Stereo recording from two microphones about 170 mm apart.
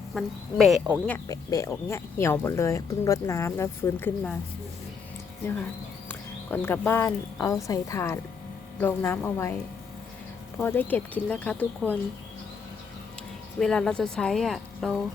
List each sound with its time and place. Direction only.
0.1 s a woman's voice: centre (ahead or behind)
1.3 s speech: 20° left (ahead or behind)
6.1 s speech: 15° left (ahead or behind)
10.6 s speech: 10° left (ahead or behind)
13.6 s a woman's voice: 5° left (ahead or behind)